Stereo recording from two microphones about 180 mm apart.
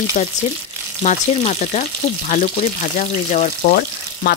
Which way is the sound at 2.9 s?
40° left (ahead or behind).